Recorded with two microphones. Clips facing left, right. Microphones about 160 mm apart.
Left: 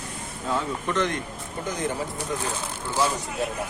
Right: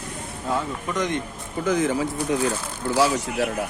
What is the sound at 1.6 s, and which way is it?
Speech, 90° right.